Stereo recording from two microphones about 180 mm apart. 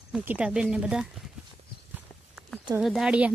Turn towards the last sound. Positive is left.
turn(degrees=-5)  # may be behind; listen again after turning